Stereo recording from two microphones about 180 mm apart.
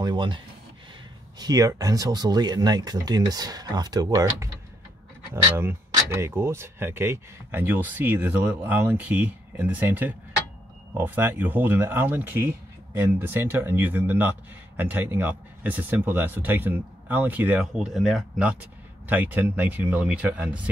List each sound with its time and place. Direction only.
0.0 s speech: 25° right (ahead or behind)
1.4 s speech: 20° right (ahead or behind)